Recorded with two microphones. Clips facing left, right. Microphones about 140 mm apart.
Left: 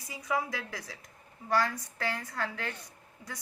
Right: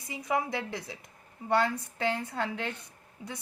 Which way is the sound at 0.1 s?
20° right (ahead or behind).